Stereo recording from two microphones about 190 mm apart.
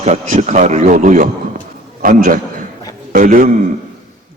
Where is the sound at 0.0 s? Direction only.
40° right (ahead or behind).